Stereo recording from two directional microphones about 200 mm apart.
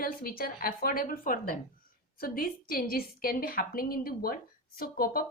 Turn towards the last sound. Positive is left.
turn(degrees=45)  # may be behind; listen again after turning